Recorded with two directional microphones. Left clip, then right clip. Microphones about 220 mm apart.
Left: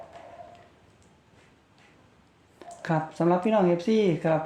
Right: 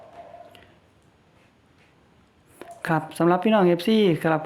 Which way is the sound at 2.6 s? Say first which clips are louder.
Right 3 dB; 35° right (ahead or behind).